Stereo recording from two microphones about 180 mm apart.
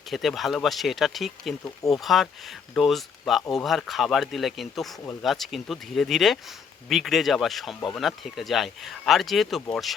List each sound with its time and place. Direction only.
0.1 s speech: centre (ahead or behind)
1.6 s speech: 20° left (ahead or behind)
2.0 s speech: centre (ahead or behind)